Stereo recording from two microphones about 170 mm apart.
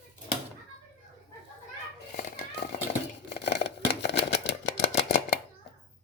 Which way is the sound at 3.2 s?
85° left.